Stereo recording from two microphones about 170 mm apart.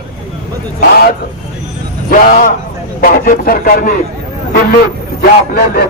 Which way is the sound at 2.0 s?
60° left (ahead or behind).